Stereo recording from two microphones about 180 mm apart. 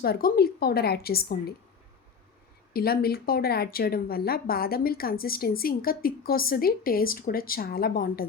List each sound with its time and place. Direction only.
0.0 s a woman's voice: 55° left (ahead or behind)
2.7 s a woman's voice: 55° left (ahead or behind)